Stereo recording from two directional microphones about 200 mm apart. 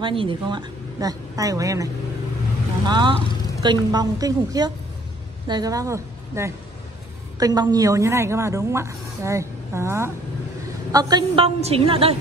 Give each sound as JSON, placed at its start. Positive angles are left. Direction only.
{"t": 0.0, "sound": "a woman's voice", "side_deg": -25}
{"t": 2.9, "sound": "a woman's voice", "side_deg": -25}